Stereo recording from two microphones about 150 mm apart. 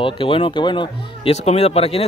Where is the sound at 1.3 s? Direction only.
45° left (ahead or behind).